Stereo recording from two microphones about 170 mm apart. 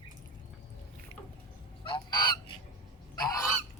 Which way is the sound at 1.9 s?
25° left (ahead or behind).